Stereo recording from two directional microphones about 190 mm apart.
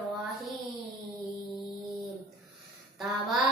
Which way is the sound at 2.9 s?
Centre (ahead or behind).